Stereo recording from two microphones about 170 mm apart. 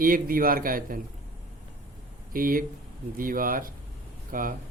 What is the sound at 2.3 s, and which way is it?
Speech, 55° right (ahead or behind).